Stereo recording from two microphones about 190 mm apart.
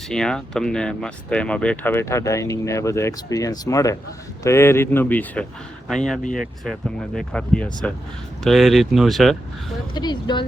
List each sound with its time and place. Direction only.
0.1 s speech: 5° left (ahead or behind)
6.2 s speech: 45° left (ahead or behind)
6.7 s speech: centre (ahead or behind)
9.9 s speech: 20° left (ahead or behind)